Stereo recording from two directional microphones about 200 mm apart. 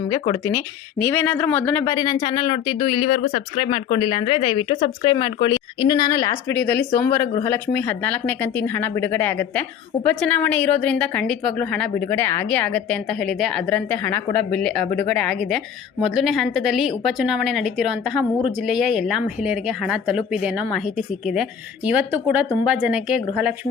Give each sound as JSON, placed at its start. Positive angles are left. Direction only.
{"t": 0.1, "sound": "speech", "side_deg": 20}
{"t": 0.9, "sound": "speech", "side_deg": 10}